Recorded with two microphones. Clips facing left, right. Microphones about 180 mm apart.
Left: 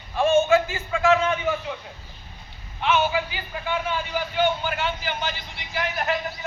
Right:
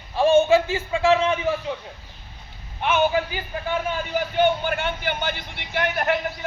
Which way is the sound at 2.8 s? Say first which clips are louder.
Right 2 dB; 50° right (ahead or behind).